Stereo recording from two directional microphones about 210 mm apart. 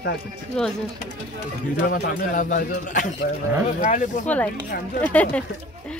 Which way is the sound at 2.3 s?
40° left (ahead or behind).